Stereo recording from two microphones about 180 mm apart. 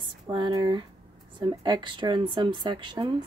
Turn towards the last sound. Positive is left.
turn(degrees=-25)  # may be behind; listen again after turning